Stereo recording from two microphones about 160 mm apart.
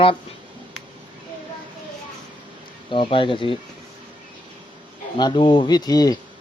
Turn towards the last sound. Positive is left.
turn(degrees=25)  # may be behind; listen again after turning